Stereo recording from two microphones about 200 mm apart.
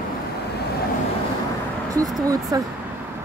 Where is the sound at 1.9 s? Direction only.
15° right (ahead or behind).